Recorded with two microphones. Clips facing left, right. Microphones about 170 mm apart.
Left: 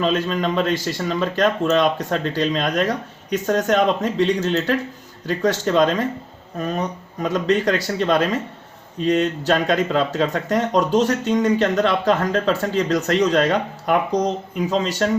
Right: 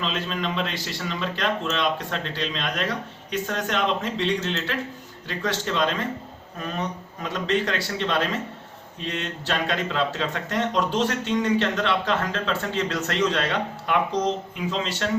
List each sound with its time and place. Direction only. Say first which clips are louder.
0.0 s speech: left 8 dB; 45° left (ahead or behind)